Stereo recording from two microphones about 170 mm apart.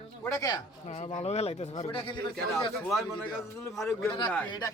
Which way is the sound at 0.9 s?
40° left (ahead or behind).